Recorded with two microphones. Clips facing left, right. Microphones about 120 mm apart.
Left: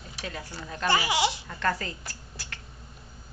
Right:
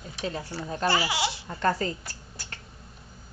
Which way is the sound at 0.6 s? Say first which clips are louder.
Right 2 dB; 35° right (ahead or behind).